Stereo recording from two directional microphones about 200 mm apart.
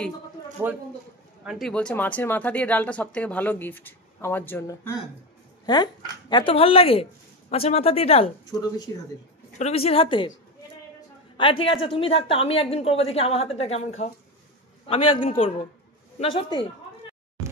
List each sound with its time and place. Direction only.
0.6 s a man's voice: 10° right (ahead or behind); by 8.9 s 20° left (ahead or behind)
9.6 s speech: 30° left (ahead or behind)
11.3 s speech: 25° left (ahead or behind)